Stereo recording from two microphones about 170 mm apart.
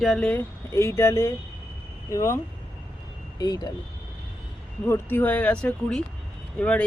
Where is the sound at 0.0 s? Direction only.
5° left (ahead or behind); by 3.7 s 20° left (ahead or behind).